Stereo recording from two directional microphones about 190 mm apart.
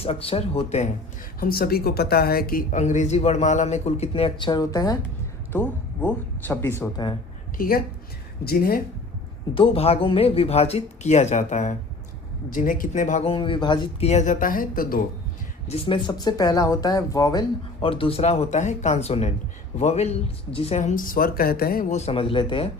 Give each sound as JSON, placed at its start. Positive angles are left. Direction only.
{"t": 0.0, "sound": "speech", "side_deg": 30}
{"t": 1.4, "sound": "speech", "side_deg": 50}
{"t": 8.4, "sound": "speech", "side_deg": 50}
{"t": 9.6, "sound": "speech", "side_deg": 30}
{"t": 15.7, "sound": "speech", "side_deg": 25}